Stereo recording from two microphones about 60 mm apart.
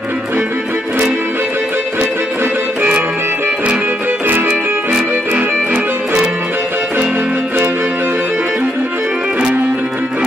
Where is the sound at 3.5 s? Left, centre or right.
Right.